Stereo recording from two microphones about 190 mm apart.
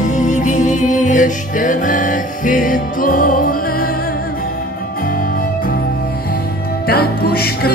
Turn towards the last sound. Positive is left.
turn(degrees=55)  # may be behind; listen again after turning